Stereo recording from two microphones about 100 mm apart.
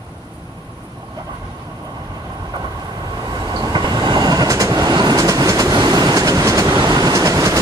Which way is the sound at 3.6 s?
45° right (ahead or behind).